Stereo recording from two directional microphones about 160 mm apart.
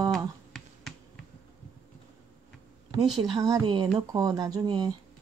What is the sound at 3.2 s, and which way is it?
Speech, 20° right (ahead or behind).